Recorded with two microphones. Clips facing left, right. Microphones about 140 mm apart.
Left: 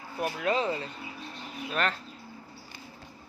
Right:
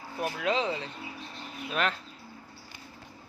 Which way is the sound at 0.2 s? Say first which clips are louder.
Left 1 dB; 5° left (ahead or behind).